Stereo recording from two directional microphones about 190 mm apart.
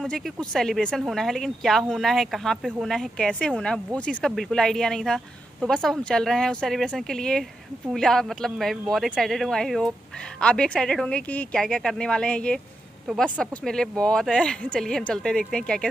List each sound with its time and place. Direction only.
0.0 s speech: 5° left (ahead or behind)